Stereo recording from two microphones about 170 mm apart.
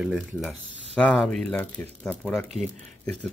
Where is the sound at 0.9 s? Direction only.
5° left (ahead or behind).